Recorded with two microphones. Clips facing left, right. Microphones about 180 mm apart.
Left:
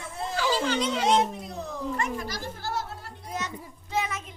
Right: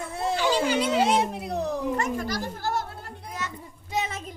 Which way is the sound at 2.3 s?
55° right (ahead or behind).